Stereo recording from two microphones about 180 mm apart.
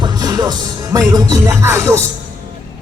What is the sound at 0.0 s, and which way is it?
Music, 20° right (ahead or behind).